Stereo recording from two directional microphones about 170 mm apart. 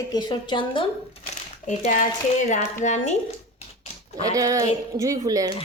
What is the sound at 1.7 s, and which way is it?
Speech, 50° left (ahead or behind).